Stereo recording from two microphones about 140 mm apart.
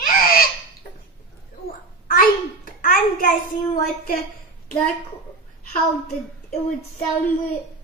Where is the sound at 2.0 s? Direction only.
90° left.